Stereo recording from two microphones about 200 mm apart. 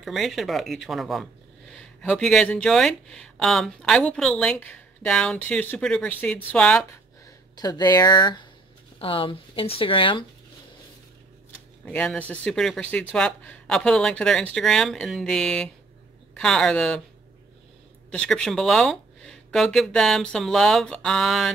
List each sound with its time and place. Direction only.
0.0 s speech: centre (ahead or behind)
7.5 s speech: 20° left (ahead or behind)
11.8 s speech: 5° left (ahead or behind)
18.1 s speech: 5° left (ahead or behind)